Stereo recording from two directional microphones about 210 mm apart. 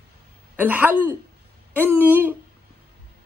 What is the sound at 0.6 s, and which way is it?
Speech, 10° right (ahead or behind).